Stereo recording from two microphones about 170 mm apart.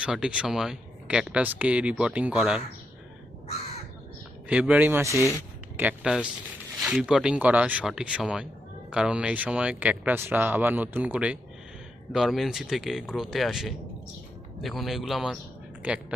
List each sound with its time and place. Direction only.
0.0 s speech: 5° right (ahead or behind)
4.4 s speech: 5° right (ahead or behind)
5.0 s speech: 20° left (ahead or behind)
5.7 s speech: 5° right (ahead or behind)